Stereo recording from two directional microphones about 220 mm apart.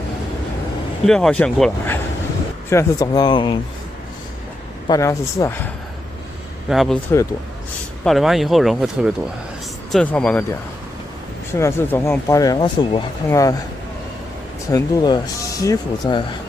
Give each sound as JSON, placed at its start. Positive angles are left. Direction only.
{"t": 1.0, "sound": "speech", "side_deg": 0}
{"t": 4.8, "sound": "speech", "side_deg": 15}
{"t": 6.7, "sound": "speech", "side_deg": 0}
{"t": 8.0, "sound": "speech", "side_deg": 0}
{"t": 11.5, "sound": "speech", "side_deg": 10}
{"t": 14.7, "sound": "speech", "side_deg": 15}